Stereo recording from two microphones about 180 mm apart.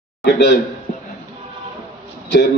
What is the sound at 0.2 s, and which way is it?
Speech, 75° left (ahead or behind).